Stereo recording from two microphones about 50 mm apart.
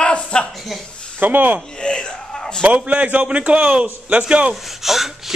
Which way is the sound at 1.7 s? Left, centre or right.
Centre.